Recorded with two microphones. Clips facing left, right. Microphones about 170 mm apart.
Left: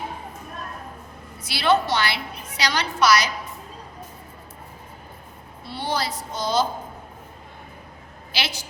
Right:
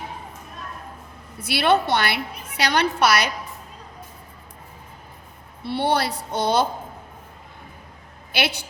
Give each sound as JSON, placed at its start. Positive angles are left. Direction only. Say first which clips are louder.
{"t": 1.4, "sound": "a woman's voice", "louder": "right 1 dB", "side_deg": -60}
{"t": 5.6, "sound": "a woman's voice", "louder": "right 5 dB", "side_deg": -65}
{"t": 8.3, "sound": "a woman's voice", "louder": "right 5 dB", "side_deg": -60}